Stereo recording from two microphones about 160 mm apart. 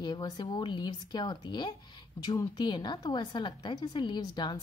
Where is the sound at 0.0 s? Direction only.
25° left (ahead or behind).